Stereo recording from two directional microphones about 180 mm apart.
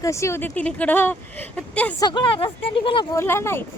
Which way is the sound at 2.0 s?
25° left (ahead or behind).